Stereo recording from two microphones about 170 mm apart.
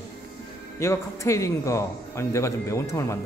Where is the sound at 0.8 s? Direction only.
15° left (ahead or behind).